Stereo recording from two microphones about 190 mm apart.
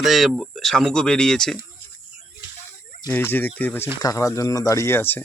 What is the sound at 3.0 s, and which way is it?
Speech, 10° left (ahead or behind).